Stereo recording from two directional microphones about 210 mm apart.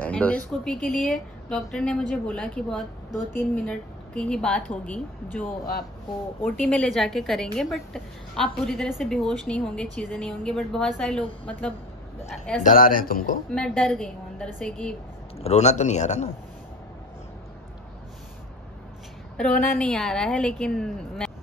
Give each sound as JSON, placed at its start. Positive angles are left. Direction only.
{"t": 0.0, "sound": "speech", "side_deg": 5}
{"t": 12.3, "sound": "speech", "side_deg": 5}
{"t": 12.6, "sound": "a man's voice", "side_deg": 40}
{"t": 13.5, "sound": "speech", "side_deg": 5}
{"t": 15.3, "sound": "a man's voice", "side_deg": 30}
{"t": 19.3, "sound": "speech", "side_deg": 5}